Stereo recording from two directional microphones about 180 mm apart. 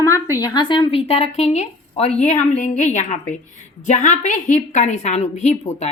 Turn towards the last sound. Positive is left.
turn(degrees=40)  # may be behind; listen again after turning